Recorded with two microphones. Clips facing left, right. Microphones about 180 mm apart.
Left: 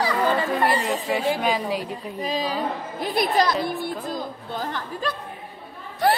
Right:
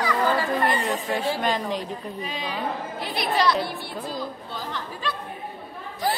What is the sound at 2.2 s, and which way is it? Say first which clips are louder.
Speech: left 10 dB; 35° left (ahead or behind).